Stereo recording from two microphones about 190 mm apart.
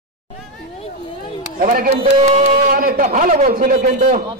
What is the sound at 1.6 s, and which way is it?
Speech, 50° right (ahead or behind).